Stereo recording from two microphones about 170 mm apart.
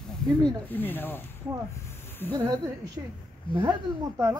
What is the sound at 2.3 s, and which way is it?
Speech, 25° right (ahead or behind).